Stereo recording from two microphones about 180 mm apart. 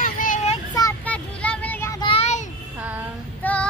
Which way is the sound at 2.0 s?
35° left (ahead or behind).